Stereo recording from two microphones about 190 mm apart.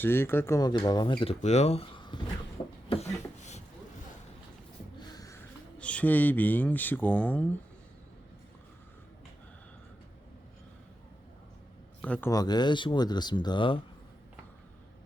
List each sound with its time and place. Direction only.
0.0 s speech: 10° left (ahead or behind)
2.6 s beatboxing: 25° left (ahead or behind)
2.9 s beatboxing: 35° left (ahead or behind)
4.9 s a sound: 20° left (ahead or behind)
5.8 s speech: 5° left (ahead or behind)
12.0 s speech: 5° left (ahead or behind)
12.3 s speech: 20° left (ahead or behind)